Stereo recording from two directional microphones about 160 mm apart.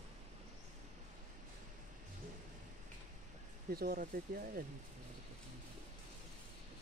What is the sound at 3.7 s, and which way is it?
Speech, 70° right (ahead or behind).